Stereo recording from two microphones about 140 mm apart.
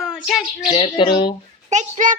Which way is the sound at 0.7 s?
35° left (ahead or behind).